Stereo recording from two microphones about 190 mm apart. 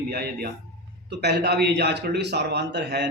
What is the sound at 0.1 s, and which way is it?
Speech, 55° right (ahead or behind).